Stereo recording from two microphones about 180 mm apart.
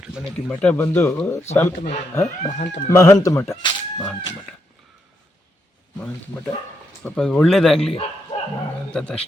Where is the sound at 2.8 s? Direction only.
15° left (ahead or behind).